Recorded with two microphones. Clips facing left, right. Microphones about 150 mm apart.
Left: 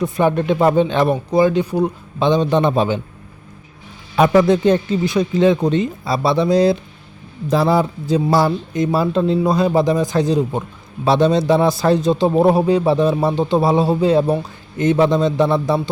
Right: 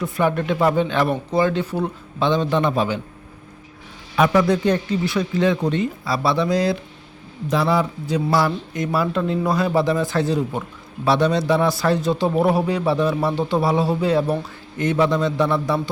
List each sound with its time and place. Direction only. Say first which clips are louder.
0.0 s a man's voice: left 4 dB; 20° left (ahead or behind)
4.1 s a man's voice: left 4 dB; 30° left (ahead or behind)
7.5 s a man's voice: left 4 dB; 35° left (ahead or behind)